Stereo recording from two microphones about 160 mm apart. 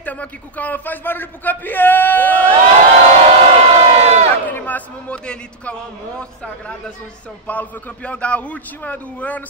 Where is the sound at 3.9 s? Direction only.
45° right (ahead or behind).